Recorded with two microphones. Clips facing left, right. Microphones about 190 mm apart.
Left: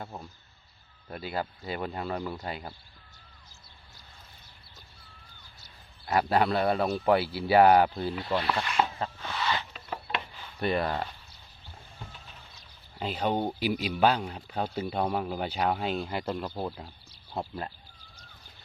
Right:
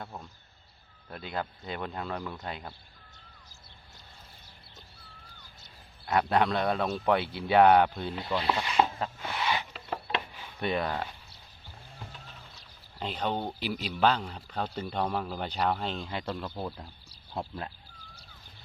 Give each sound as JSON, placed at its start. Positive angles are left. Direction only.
{"t": 1.1, "sound": "speech", "side_deg": 5}
{"t": 6.1, "sound": "speech", "side_deg": 5}
{"t": 8.8, "sound": "a sound", "side_deg": -15}
{"t": 10.4, "sound": "speech", "side_deg": 0}
{"t": 13.0, "sound": "speech", "side_deg": 5}